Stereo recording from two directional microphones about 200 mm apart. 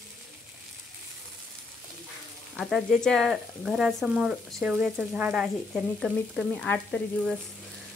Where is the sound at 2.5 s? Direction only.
Centre (ahead or behind).